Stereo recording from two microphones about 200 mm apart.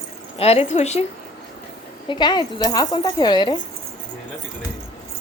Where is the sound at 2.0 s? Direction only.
20° left (ahead or behind).